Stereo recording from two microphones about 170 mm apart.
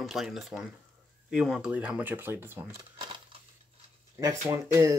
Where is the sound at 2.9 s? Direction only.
30° right (ahead or behind).